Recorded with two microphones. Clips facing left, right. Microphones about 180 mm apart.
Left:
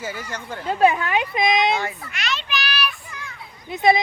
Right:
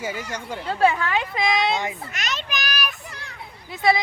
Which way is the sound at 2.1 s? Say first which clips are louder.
Left 2 dB; 40° right (ahead or behind).